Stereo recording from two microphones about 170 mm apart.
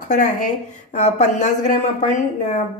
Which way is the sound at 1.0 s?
45° left (ahead or behind).